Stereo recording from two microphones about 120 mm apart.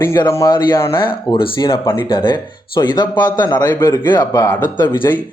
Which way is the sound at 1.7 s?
25° left (ahead or behind).